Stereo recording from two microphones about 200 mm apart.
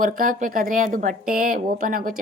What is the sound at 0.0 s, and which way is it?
A woman's voice, 40° right (ahead or behind).